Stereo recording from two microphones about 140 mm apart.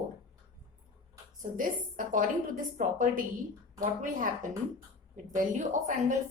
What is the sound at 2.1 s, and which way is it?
A woman's voice, 70° right (ahead or behind).